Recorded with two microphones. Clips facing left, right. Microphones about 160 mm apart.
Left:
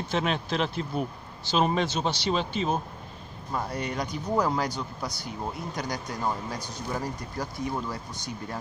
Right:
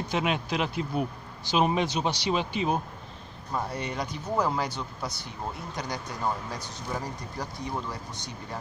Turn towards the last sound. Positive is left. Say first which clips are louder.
# left 3 dB
turn(degrees=0)  # may be behind; listen again after turning